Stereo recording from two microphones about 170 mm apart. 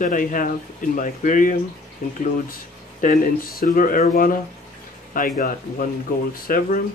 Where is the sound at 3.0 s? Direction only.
55° left (ahead or behind).